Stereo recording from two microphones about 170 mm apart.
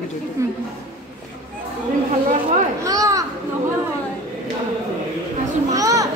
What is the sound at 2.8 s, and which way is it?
Speech, 20° right (ahead or behind).